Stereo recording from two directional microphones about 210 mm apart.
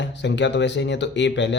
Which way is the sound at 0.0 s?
55° left (ahead or behind).